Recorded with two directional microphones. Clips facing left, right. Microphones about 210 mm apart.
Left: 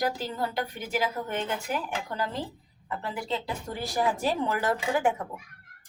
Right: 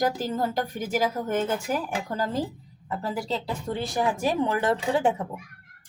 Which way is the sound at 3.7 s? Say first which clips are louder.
Right 2 dB; 20° right (ahead or behind).